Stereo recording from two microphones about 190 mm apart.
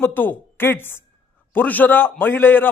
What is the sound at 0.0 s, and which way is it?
A man's voice, 10° left (ahead or behind).